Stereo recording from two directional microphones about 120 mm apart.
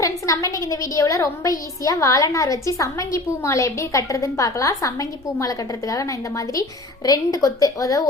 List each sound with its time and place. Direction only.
0.0 s a woman's voice: 30° left (ahead or behind)